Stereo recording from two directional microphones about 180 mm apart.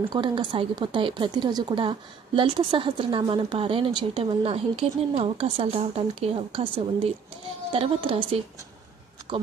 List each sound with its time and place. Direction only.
0.1 s a woman's voice: 25° right (ahead or behind)